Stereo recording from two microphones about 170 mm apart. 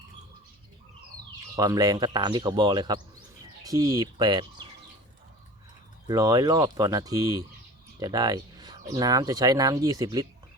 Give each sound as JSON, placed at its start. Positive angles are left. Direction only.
{"t": 1.5, "sound": "speech", "side_deg": -20}
{"t": 6.1, "sound": "speech", "side_deg": -20}